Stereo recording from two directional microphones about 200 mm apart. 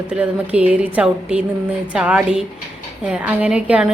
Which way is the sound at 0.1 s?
5° right (ahead or behind).